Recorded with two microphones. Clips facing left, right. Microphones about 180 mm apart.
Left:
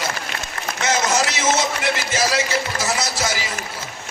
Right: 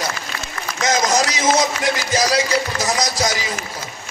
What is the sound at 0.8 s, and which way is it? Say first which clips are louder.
Music: right 2 dB; 35° right (ahead or behind).